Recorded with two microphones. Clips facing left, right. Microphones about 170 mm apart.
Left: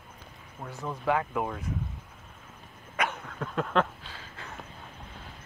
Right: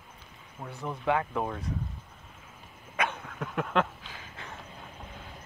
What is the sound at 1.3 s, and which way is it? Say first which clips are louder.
Speech: even; 10° left (ahead or behind).